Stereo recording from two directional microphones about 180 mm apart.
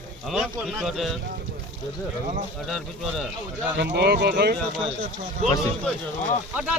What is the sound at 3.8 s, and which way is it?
Speech, 65° right (ahead or behind).